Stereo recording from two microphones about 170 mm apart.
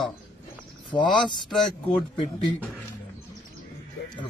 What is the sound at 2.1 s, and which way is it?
Speech, 30° left (ahead or behind).